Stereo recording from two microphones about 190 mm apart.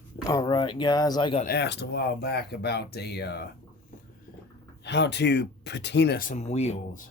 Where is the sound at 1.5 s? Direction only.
60° left (ahead or behind).